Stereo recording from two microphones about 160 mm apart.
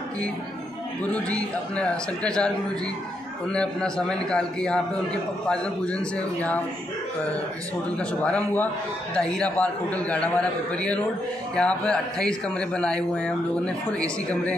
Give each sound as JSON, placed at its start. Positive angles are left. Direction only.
{"t": 1.0, "sound": "a man's voice", "side_deg": 5}
{"t": 3.5, "sound": "a man's voice", "side_deg": 5}
{"t": 8.0, "sound": "a man's voice", "side_deg": 10}
{"t": 11.5, "sound": "a man's voice", "side_deg": 5}